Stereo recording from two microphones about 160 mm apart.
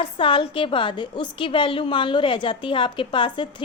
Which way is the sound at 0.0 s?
30° left (ahead or behind).